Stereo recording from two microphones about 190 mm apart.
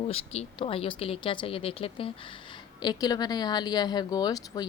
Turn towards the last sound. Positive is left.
turn(degrees=20)  # may be behind; listen again after turning